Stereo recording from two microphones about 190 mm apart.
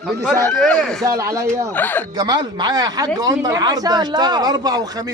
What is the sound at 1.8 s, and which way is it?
Speech, 10° left (ahead or behind).